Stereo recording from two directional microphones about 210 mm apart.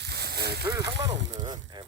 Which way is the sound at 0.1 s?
50° right (ahead or behind).